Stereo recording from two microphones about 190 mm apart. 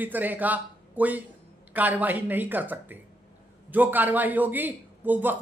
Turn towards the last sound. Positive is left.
turn(degrees=-10)  # may be behind; listen again after turning